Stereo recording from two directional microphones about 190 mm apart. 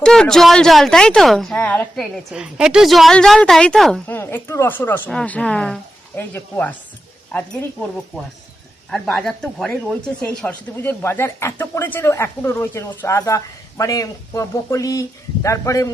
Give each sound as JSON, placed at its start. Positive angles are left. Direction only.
{"t": 0.0, "sound": "speech", "side_deg": 5}
{"t": 2.3, "sound": "speech", "side_deg": -5}
{"t": 8.9, "sound": "speech", "side_deg": 5}